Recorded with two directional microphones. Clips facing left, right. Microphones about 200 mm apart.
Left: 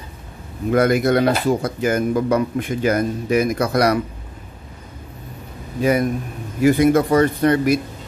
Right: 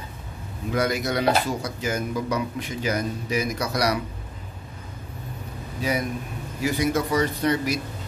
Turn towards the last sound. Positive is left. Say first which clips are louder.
# left 7 dB
turn(degrees=55)  # may be behind; listen again after turning